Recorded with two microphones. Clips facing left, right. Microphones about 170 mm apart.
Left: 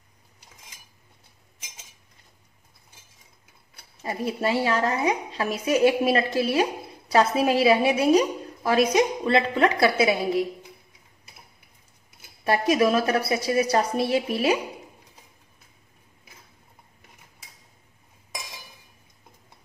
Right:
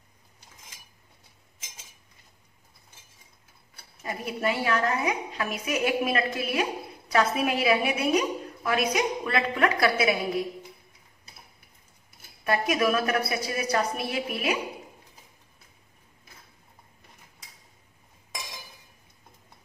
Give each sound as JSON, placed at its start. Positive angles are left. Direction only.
{"t": 4.0, "sound": "a woman's voice", "side_deg": 30}
{"t": 12.4, "sound": "a woman's voice", "side_deg": 30}